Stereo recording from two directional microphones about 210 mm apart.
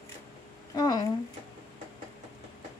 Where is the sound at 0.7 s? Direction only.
20° left (ahead or behind).